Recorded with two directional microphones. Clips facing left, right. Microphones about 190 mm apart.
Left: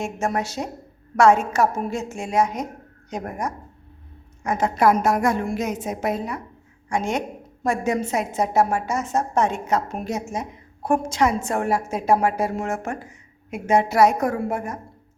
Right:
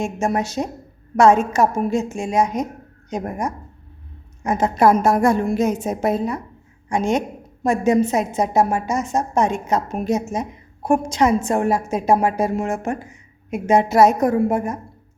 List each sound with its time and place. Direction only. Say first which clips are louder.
0.0 s a woman's voice: right 3 dB; 15° right (ahead or behind)